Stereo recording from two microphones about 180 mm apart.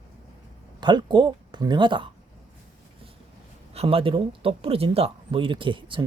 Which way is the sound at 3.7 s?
35° right (ahead or behind).